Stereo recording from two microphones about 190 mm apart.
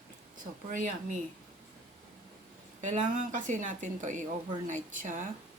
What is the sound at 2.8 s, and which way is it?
Speech, 40° right (ahead or behind).